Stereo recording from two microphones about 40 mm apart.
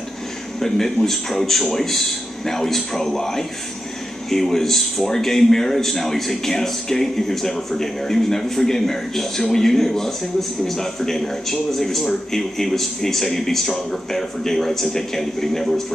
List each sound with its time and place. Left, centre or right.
0.6 s speech: centre